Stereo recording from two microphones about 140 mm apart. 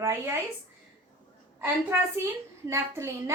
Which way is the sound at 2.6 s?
20° right (ahead or behind).